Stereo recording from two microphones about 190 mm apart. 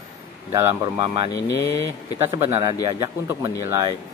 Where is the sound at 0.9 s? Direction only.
25° right (ahead or behind).